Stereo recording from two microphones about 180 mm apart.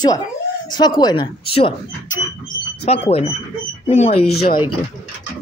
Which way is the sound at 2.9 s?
35° left (ahead or behind).